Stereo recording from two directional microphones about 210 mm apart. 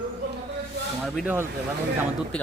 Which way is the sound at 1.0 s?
Centre (ahead or behind).